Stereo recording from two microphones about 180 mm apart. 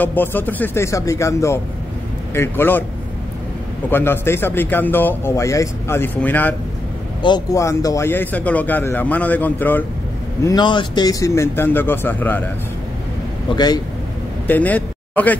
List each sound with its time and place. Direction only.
0.0 s a man's voice: 10° left (ahead or behind)
3.9 s a man's voice: 10° left (ahead or behind)
7.2 s a man's voice: 25° left (ahead or behind)
10.4 s a man's voice: 25° left (ahead or behind)
13.5 s speech: 30° left (ahead or behind)
14.5 s speech: 10° left (ahead or behind)